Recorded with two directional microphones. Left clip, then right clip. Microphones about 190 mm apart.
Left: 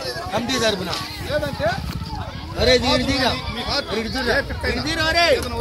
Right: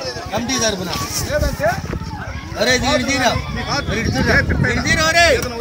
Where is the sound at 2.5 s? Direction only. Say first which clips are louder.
Right 1 dB; 50° right (ahead or behind).